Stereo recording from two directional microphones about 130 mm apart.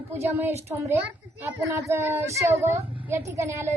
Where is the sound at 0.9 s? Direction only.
20° right (ahead or behind).